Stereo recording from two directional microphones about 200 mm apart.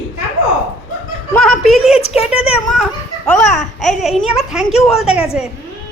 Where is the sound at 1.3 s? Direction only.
Centre (ahead or behind).